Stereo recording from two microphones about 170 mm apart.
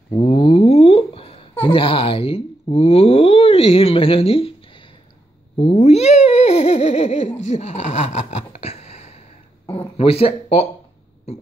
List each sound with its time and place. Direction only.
0.1 s a sound: 35° left (ahead or behind)
1.7 s speech: 35° left (ahead or behind)
5.6 s babbling: 40° left (ahead or behind)
9.9 s speech: 35° left (ahead or behind)